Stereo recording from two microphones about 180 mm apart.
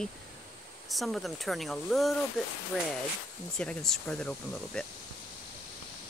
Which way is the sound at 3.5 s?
5° left (ahead or behind).